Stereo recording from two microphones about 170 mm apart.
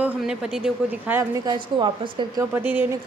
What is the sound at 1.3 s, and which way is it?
A woman's voice, 25° right (ahead or behind).